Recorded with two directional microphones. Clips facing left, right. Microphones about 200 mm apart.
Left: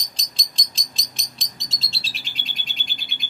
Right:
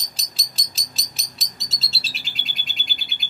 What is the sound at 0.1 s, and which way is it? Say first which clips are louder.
Bird: even; 5° right (ahead or behind).